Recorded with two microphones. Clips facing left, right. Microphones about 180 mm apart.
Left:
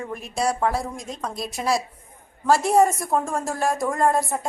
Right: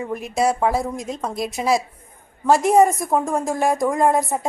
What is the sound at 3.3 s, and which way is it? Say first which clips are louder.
A woman's voice: right 4 dB; 15° right (ahead or behind).